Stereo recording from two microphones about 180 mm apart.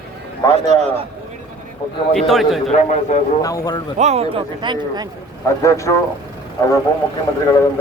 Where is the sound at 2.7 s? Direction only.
40° left (ahead or behind).